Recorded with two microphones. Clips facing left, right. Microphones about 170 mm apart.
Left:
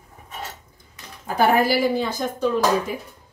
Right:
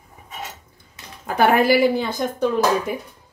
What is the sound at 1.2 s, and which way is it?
Speech, 65° right (ahead or behind).